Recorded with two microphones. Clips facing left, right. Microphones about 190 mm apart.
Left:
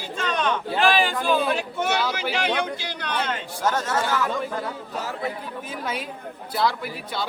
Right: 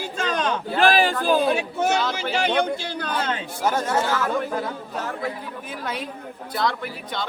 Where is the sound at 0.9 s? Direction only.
35° right (ahead or behind).